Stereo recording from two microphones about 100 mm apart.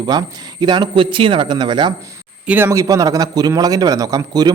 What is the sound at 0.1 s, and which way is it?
Speech, 45° right (ahead or behind).